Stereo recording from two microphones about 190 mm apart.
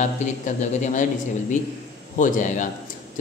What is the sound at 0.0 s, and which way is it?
Speech, 40° left (ahead or behind).